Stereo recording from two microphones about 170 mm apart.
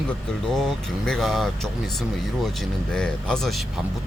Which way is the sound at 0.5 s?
Centre (ahead or behind).